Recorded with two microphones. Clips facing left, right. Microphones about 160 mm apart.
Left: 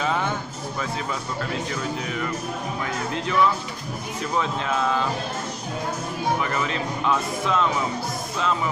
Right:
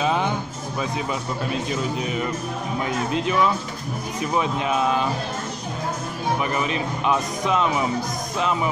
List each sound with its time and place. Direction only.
0.0 s music: 20° right (ahead or behind)
1.5 s speech: 20° right (ahead or behind)
6.4 s speech: 20° right (ahead or behind)